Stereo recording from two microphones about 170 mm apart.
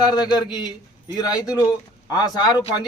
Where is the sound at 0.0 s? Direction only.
25° left (ahead or behind).